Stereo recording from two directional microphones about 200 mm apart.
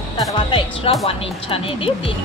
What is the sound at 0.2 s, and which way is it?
Music, 25° left (ahead or behind).